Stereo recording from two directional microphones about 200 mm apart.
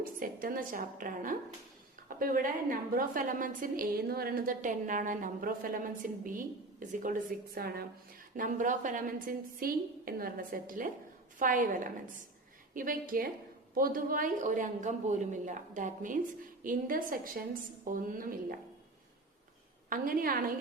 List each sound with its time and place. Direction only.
0.0 s a woman's voice: 45° right (ahead or behind)
19.9 s a woman's voice: 45° right (ahead or behind)